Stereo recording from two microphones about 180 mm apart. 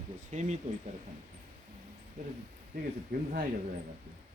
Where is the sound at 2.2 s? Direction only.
40° right (ahead or behind).